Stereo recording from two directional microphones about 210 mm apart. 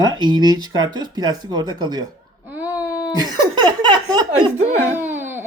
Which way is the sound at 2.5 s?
5° right (ahead or behind).